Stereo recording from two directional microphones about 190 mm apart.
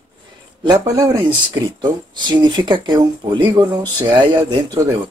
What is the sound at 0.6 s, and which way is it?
Speech, 20° right (ahead or behind).